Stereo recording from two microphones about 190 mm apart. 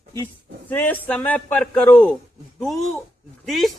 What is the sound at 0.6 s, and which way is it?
Speech, 10° left (ahead or behind).